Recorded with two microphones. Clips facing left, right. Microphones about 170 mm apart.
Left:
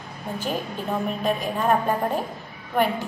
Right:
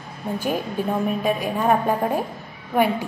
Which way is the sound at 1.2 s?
10° right (ahead or behind).